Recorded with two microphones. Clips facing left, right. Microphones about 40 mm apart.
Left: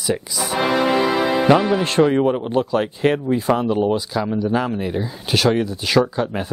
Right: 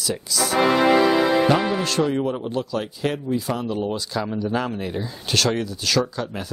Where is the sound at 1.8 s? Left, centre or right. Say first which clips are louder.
Left 5 dB; left.